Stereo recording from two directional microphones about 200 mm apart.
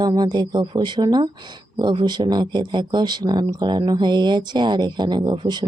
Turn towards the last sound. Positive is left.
turn(degrees=-25)  # may be behind; listen again after turning